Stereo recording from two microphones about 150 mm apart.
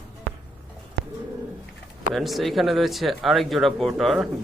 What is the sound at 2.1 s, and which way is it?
Speech, centre (ahead or behind).